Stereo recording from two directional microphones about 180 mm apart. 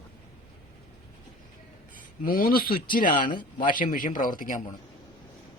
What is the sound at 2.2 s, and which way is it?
Speech, 50° left (ahead or behind).